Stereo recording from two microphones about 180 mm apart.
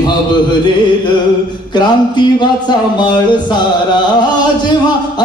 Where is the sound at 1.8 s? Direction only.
25° left (ahead or behind).